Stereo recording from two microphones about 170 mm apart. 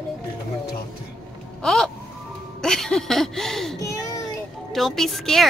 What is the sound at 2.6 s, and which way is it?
Speech, 5° left (ahead or behind).